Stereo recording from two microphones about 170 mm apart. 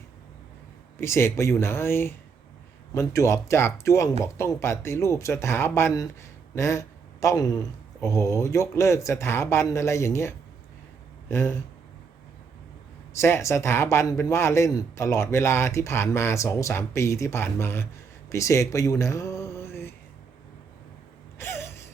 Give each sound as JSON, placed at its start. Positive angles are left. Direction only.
{"t": 0.9, "sound": "speech", "side_deg": 15}
{"t": 13.1, "sound": "speech", "side_deg": 15}
{"t": 21.3, "sound": "a sound", "side_deg": 15}